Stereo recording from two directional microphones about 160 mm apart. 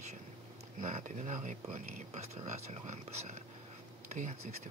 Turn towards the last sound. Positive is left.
turn(degrees=-45)  # may be behind; listen again after turning